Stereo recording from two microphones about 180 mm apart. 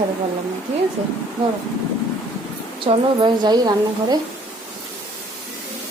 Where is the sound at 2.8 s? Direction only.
25° right (ahead or behind).